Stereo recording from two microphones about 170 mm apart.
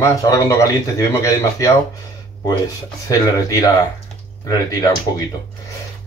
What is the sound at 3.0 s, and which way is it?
Speech, 20° left (ahead or behind).